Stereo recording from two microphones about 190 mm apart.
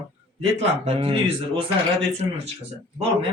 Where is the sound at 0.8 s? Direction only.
30° right (ahead or behind).